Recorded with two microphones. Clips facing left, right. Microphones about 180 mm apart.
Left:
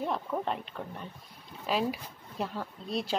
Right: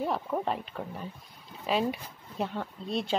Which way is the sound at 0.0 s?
Centre (ahead or behind).